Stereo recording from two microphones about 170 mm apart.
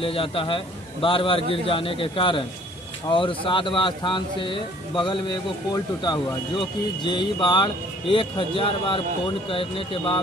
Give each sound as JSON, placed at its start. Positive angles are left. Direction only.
{"t": 0.0, "sound": "a man's voice", "side_deg": 30}